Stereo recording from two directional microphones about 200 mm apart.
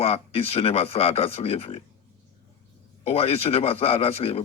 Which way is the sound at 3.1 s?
30° left (ahead or behind).